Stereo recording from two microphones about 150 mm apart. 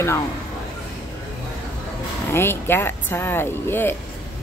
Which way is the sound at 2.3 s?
15° left (ahead or behind).